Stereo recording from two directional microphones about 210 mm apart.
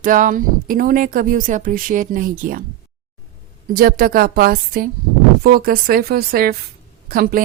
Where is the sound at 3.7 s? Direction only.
45° right (ahead or behind).